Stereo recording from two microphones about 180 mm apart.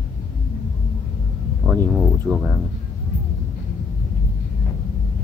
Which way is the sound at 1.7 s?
Centre (ahead or behind).